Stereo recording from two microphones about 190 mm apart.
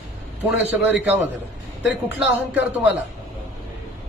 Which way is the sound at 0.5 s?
10° right (ahead or behind).